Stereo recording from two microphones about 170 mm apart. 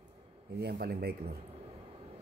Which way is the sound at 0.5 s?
70° right (ahead or behind).